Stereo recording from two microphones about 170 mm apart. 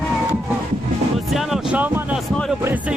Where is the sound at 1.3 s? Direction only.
5° right (ahead or behind).